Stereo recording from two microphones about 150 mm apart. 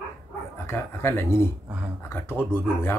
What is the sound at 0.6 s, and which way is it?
Speech, 15° left (ahead or behind).